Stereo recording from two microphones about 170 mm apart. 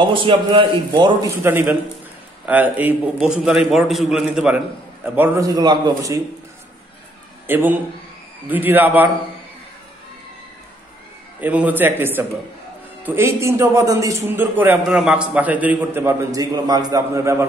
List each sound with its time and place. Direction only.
0.0 s a man's voice: 30° right (ahead or behind)
1.3 s a man's voice: 15° right (ahead or behind)
7.4 s a man's voice: 10° right (ahead or behind)
11.4 s a man's voice: 10° right (ahead or behind)